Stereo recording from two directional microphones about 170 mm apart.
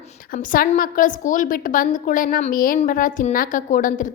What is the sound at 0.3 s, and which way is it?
A woman's voice, 55° left (ahead or behind).